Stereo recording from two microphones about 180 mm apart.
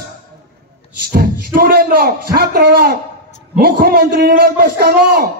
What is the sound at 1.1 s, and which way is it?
A man's voice, 55° right (ahead or behind).